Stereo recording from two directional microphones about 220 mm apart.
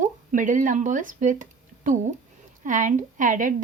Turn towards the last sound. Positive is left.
turn(degrees=-35)  # may be behind; listen again after turning